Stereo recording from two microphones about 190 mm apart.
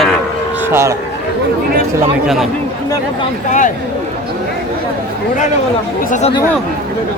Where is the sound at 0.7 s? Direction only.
15° right (ahead or behind).